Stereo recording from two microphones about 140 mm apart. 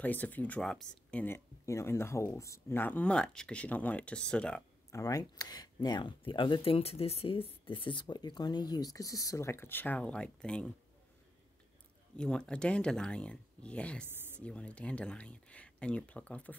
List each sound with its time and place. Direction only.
0.0 s speech: 10° left (ahead or behind)
4.9 s speech: 25° left (ahead or behind); by 10.7 s 5° left (ahead or behind)
12.2 s speech: 5° left (ahead or behind)
14.0 s a sound: 15° right (ahead or behind)
14.4 s speech: 10° left (ahead or behind)